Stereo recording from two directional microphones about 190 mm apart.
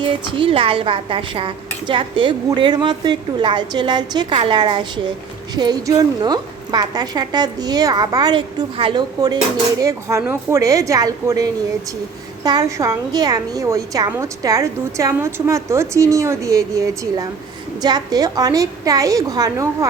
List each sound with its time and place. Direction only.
0.0 s a woman's voice: 25° right (ahead or behind)